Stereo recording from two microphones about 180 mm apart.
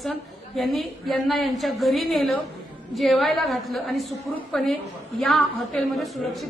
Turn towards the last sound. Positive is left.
turn(degrees=0)  # may be behind; listen again after turning